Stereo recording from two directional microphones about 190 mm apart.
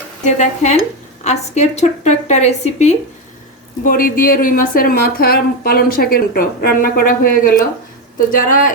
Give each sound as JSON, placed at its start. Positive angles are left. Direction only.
{"t": 0.3, "sound": "a woman's voice", "side_deg": 40}
{"t": 3.8, "sound": "a woman's voice", "side_deg": 50}